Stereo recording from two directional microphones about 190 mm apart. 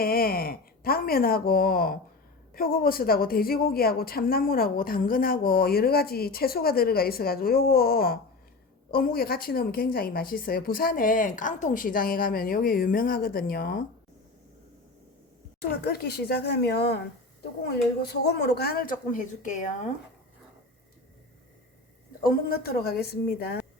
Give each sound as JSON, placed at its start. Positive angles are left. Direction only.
{"t": 0.0, "sound": "speech", "side_deg": 50}
{"t": 15.8, "sound": "a woman's voice", "side_deg": 55}
{"t": 22.2, "sound": "speech", "side_deg": 50}